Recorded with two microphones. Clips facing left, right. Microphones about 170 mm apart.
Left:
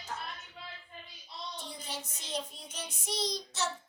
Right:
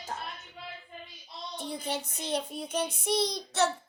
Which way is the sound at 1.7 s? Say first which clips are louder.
Right 9 dB; 60° right (ahead or behind).